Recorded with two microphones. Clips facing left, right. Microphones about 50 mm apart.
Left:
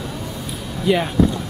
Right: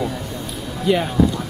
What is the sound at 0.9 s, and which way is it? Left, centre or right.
Speech, centre.